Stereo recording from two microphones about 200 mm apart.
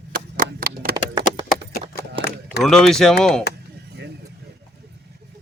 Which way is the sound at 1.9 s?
55° left (ahead or behind).